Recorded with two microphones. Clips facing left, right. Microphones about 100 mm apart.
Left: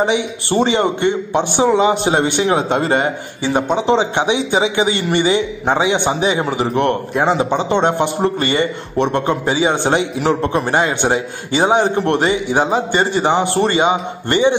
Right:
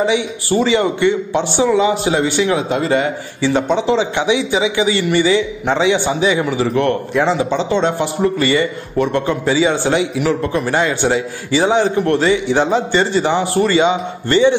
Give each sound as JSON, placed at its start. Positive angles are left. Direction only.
{"t": 0.1, "sound": "a man's voice", "side_deg": 25}
{"t": 3.7, "sound": "a man's voice", "side_deg": 20}